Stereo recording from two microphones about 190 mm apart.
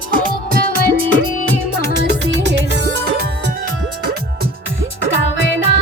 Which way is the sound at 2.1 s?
65° right (ahead or behind).